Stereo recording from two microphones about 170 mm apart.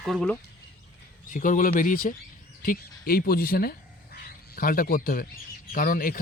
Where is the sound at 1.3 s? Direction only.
50° left (ahead or behind).